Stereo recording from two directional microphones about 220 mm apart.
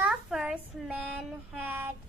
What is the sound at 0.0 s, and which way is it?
Child singing, 5° right (ahead or behind).